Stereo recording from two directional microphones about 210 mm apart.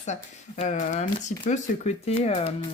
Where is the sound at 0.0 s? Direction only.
35° left (ahead or behind).